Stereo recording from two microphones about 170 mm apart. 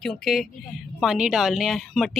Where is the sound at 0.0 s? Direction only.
Centre (ahead or behind).